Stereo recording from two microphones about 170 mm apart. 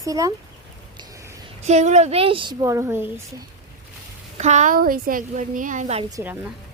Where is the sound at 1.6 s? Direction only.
40° right (ahead or behind); by 3.1 s 15° right (ahead or behind).